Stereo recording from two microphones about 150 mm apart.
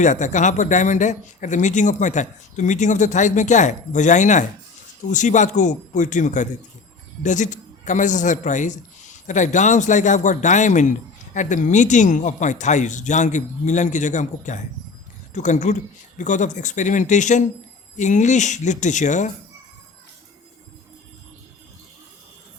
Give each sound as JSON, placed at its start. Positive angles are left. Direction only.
{"t": 0.0, "sound": "speech", "side_deg": 55}